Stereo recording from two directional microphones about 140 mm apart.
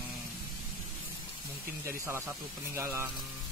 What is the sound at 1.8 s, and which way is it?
Speech, 20° right (ahead or behind).